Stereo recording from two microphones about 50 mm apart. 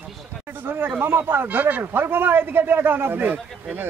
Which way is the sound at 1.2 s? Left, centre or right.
Right.